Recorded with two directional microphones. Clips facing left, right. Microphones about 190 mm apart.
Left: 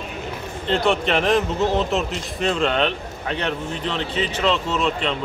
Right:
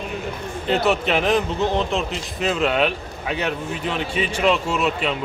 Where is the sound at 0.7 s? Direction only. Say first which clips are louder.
Even; 5° right (ahead or behind).